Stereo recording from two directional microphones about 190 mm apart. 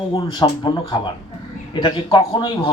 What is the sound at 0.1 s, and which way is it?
Speech, 25° left (ahead or behind).